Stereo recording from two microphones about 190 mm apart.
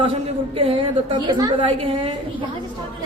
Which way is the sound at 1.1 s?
25° right (ahead or behind).